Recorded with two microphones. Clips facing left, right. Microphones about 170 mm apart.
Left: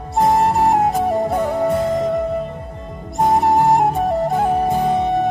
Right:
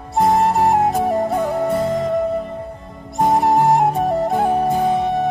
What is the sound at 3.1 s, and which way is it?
Flute, centre (ahead or behind).